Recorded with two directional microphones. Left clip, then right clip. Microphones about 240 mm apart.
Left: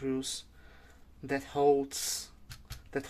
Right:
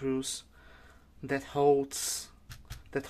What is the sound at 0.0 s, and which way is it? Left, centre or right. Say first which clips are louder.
Speech: right 2 dB; centre.